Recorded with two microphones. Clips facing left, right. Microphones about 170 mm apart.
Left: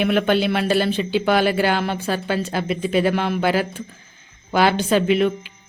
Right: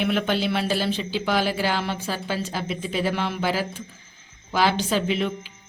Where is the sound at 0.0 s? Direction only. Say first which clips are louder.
Left 5 dB; 60° left (ahead or behind).